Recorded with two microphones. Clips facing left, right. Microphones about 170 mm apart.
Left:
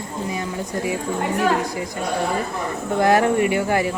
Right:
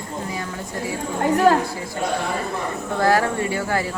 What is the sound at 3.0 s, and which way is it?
Speech, 20° left (ahead or behind).